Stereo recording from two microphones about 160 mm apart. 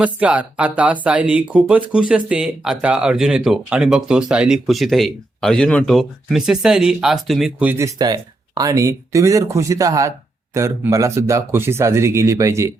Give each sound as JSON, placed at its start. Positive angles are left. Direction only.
{"t": 0.0, "sound": "speech", "side_deg": -10}